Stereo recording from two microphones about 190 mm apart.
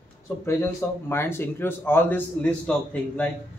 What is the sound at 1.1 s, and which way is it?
A man's voice, 10° left (ahead or behind).